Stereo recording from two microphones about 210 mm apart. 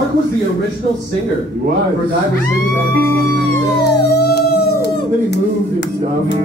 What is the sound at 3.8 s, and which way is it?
Howl, 50° left (ahead or behind).